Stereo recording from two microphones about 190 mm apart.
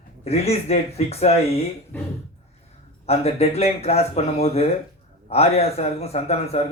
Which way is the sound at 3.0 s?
35° left (ahead or behind).